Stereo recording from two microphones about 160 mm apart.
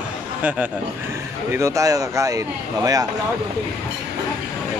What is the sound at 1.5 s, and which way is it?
Speech, 20° right (ahead or behind).